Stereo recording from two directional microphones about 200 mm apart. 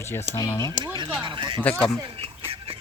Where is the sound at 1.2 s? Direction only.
25° right (ahead or behind).